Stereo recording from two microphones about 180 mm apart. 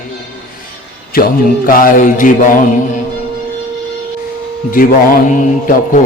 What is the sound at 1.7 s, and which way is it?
A man's voice, 50° left (ahead or behind).